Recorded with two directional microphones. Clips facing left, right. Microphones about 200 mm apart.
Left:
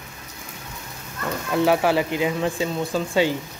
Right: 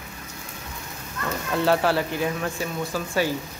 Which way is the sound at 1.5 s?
15° left (ahead or behind).